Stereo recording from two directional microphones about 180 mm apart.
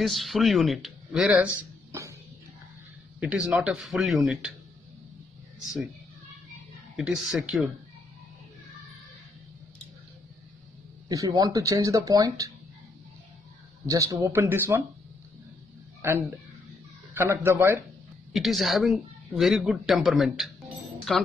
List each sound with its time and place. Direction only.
0.0 s speech: centre (ahead or behind)
1.9 s music: 15° right (ahead or behind)
3.2 s speech: 5° right (ahead or behind)
7.0 s speech: centre (ahead or behind)
11.1 s speech: 20° right (ahead or behind)
13.8 s speech: 20° right (ahead or behind)
16.0 s speech: 10° right (ahead or behind)
18.3 s speech: centre (ahead or behind)